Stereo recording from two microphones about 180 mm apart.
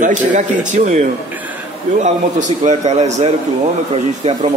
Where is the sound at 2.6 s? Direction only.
40° right (ahead or behind).